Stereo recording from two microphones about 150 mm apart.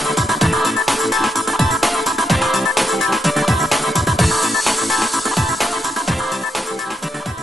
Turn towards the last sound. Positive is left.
turn(degrees=0)  # may be behind; listen again after turning